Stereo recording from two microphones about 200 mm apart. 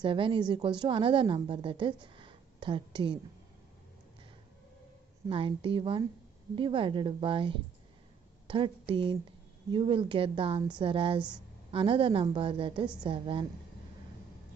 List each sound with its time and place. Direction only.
0.0 s a woman's voice: 25° right (ahead or behind)
5.3 s a woman's voice: 25° right (ahead or behind)
11.1 s a woman's voice: 5° right (ahead or behind)
11.7 s a woman's voice: 25° right (ahead or behind)